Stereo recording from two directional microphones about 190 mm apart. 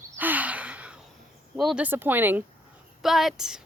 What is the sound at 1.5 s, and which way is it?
Speech, 5° right (ahead or behind).